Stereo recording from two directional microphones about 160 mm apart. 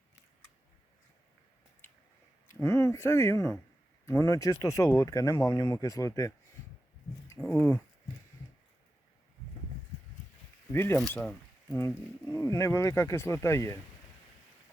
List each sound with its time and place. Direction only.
2.5 s speech: 15° left (ahead or behind)
7.5 s speech: 10° left (ahead or behind)
10.7 s speech: 15° left (ahead or behind)
12.2 s speech: 20° left (ahead or behind)